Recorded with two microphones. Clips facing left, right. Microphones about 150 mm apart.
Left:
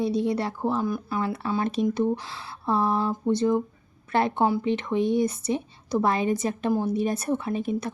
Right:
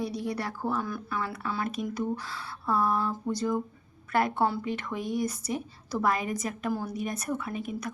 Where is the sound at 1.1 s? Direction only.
25° left (ahead or behind).